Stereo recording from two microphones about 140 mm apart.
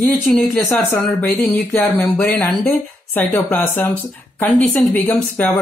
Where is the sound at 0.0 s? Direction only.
5° left (ahead or behind).